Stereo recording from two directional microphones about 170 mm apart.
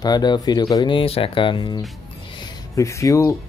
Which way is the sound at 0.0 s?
25° left (ahead or behind).